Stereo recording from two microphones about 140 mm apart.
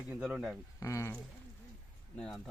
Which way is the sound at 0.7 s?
20° left (ahead or behind).